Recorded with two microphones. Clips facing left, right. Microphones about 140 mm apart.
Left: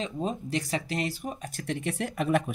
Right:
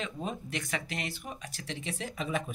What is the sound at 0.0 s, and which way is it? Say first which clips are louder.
Speech: left 5 dB; 35° left (ahead or behind).